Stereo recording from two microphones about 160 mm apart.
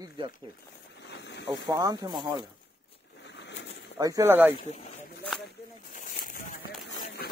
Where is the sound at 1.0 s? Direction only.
90° left.